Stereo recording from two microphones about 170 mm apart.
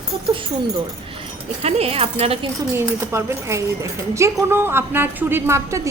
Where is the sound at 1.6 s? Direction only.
35° right (ahead or behind).